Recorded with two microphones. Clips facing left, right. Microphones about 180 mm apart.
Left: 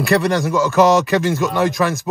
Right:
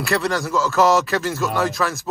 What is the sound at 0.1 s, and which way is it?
Speech, 20° left (ahead or behind).